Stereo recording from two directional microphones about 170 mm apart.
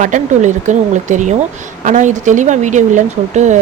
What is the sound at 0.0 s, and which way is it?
Speech, 45° right (ahead or behind).